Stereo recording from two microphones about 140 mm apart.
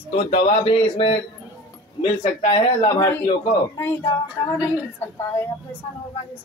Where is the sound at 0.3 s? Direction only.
45° left (ahead or behind).